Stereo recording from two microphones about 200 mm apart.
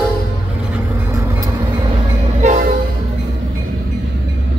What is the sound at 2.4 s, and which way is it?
Train, 35° right (ahead or behind).